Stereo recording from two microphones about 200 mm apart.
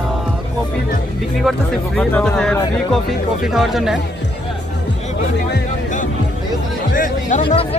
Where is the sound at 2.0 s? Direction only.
5° left (ahead or behind).